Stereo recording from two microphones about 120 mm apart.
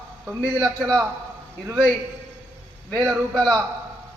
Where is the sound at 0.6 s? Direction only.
Centre (ahead or behind).